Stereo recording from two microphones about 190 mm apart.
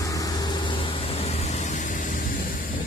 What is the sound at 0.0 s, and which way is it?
Vehicle, 20° left (ahead or behind).